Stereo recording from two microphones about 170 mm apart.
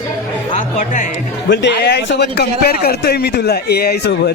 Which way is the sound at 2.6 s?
65° left (ahead or behind).